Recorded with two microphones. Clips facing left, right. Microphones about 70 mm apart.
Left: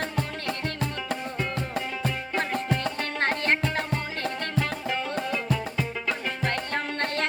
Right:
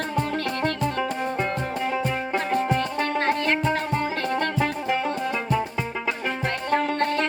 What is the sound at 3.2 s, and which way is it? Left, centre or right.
Music, left.